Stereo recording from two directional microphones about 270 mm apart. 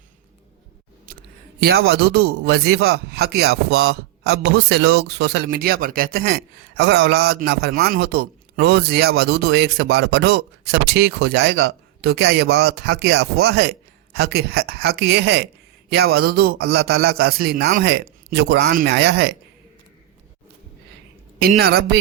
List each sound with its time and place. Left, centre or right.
1.6 s a man's voice: right
21.4 s a man's voice: right